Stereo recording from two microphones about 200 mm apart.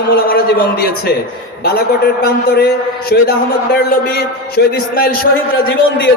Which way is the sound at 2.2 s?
55° left (ahead or behind).